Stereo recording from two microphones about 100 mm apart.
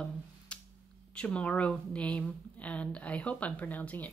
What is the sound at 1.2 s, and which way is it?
A woman's voice, 10° left (ahead or behind).